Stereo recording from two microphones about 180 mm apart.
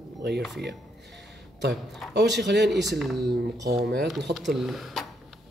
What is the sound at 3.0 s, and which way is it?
Speech, centre (ahead or behind).